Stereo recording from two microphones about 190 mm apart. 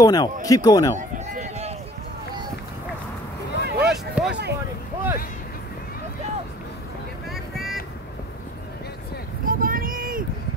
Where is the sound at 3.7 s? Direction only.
55° right (ahead or behind).